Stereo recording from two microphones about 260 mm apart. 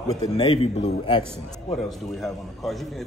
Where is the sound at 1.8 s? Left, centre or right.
Centre.